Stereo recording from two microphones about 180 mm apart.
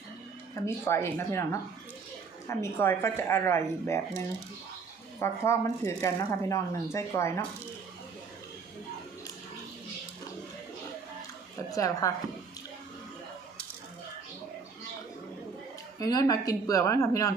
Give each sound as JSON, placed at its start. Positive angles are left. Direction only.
{"t": 0.5, "sound": "speech", "side_deg": 15}
{"t": 2.5, "sound": "speech", "side_deg": 15}
{"t": 5.2, "sound": "speech", "side_deg": 15}
{"t": 11.7, "sound": "a woman's voice", "side_deg": 20}
{"t": 16.0, "sound": "a woman's voice", "side_deg": 20}